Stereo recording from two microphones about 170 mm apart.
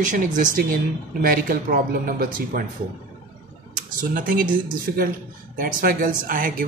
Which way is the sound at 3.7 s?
50° right (ahead or behind).